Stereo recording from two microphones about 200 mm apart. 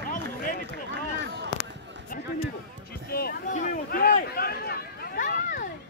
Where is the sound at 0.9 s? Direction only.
60° right (ahead or behind).